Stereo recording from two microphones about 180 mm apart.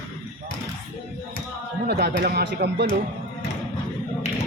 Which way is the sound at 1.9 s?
65° right (ahead or behind).